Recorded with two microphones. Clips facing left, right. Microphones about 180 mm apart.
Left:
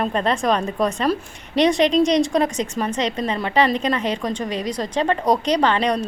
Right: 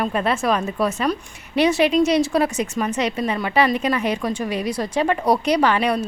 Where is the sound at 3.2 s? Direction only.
25° left (ahead or behind).